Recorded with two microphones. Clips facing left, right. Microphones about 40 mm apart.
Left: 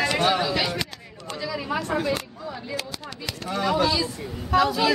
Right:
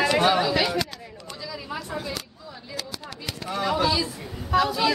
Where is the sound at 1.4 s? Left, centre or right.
Left.